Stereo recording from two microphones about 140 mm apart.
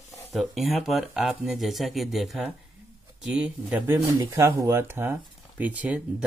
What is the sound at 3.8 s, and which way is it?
Speech, 20° right (ahead or behind).